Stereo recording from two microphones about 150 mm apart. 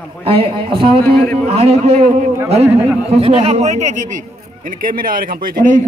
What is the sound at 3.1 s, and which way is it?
Speech, 40° right (ahead or behind).